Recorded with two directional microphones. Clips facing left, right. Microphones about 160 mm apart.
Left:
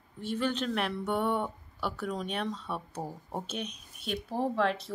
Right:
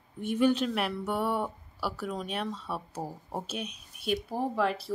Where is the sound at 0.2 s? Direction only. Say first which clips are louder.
Right 6 dB; 15° right (ahead or behind).